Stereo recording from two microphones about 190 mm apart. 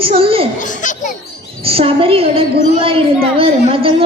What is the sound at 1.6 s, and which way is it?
A woman's voice, 30° right (ahead or behind).